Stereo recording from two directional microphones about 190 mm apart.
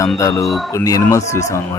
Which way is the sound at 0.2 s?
15° left (ahead or behind).